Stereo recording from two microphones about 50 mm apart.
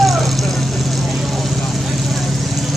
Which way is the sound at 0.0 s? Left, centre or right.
Centre.